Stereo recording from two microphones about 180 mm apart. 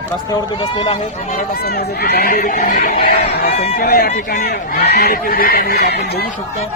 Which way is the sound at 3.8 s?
55° left (ahead or behind).